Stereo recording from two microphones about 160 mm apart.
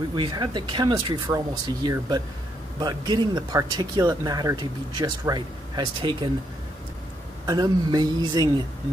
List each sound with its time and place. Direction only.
0.1 s speech: 25° right (ahead or behind)
7.4 s speech: 25° right (ahead or behind)